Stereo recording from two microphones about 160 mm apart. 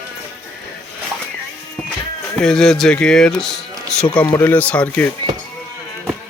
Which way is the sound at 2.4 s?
5° left (ahead or behind).